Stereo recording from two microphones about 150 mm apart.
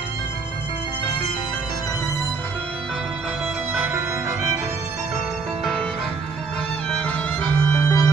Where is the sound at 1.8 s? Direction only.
20° left (ahead or behind); by 5.1 s 15° right (ahead or behind).